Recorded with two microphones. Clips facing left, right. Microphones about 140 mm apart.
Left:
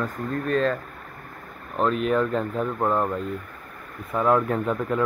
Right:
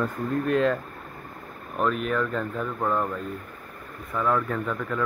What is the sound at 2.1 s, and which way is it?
Speech, 30° left (ahead or behind).